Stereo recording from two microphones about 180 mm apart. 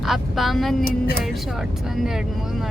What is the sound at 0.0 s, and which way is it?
Speech, centre (ahead or behind).